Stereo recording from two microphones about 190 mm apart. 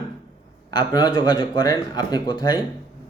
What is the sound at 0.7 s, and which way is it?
Speech, 20° left (ahead or behind).